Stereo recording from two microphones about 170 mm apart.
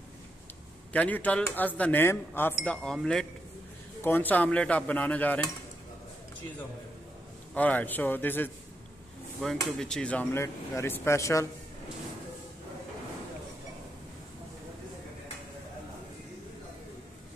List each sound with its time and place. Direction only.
0.9 s speech: 10° left (ahead or behind)
7.5 s speech: 10° left (ahead or behind)
9.7 s speech: 5° left (ahead or behind)